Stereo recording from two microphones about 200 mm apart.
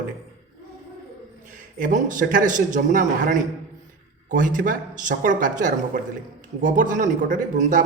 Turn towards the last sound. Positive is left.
turn(degrees=-40)  # may be behind; listen again after turning